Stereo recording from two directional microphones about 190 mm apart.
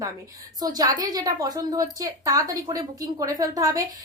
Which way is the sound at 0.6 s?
20° right (ahead or behind).